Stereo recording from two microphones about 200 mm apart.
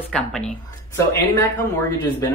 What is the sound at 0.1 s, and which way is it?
Speech, 5° left (ahead or behind).